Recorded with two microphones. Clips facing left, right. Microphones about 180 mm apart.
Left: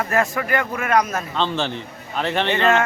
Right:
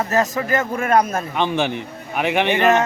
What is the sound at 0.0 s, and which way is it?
Speech, 20° right (ahead or behind).